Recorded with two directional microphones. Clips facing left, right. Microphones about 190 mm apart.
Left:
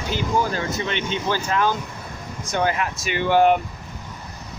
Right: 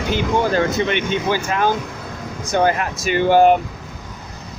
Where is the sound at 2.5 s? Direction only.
45° right (ahead or behind).